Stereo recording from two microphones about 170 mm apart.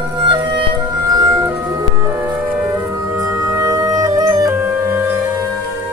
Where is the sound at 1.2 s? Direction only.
15° right (ahead or behind).